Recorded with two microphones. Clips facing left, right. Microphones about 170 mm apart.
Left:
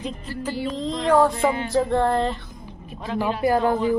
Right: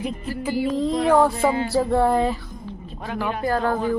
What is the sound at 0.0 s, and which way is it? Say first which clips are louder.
Music: right 3 dB; 10° right (ahead or behind).